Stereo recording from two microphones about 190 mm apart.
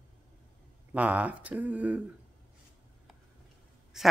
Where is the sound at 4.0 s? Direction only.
Centre (ahead or behind).